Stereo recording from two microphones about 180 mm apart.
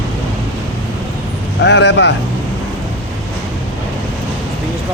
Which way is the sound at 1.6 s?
75° left (ahead or behind).